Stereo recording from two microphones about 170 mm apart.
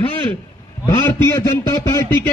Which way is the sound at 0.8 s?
20° left (ahead or behind).